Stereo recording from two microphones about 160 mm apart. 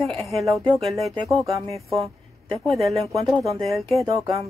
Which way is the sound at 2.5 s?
Centre (ahead or behind).